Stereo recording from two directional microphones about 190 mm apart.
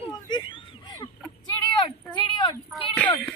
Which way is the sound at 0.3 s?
25° left (ahead or behind).